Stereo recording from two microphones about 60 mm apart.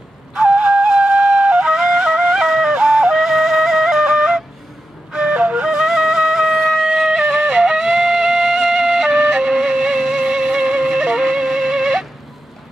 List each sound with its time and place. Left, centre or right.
0.5 s flute: centre
5.7 s music: centre